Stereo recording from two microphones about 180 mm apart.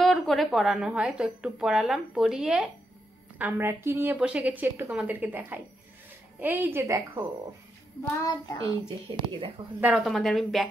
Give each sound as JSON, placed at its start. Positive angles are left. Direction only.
{"t": 0.0, "sound": "a woman's voice", "side_deg": 0}
{"t": 8.2, "sound": "child singing", "side_deg": 20}
{"t": 8.8, "sound": "speech", "side_deg": -30}
{"t": 9.8, "sound": "a woman's voice", "side_deg": -5}